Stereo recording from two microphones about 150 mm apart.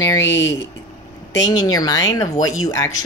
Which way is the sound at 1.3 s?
25° left (ahead or behind).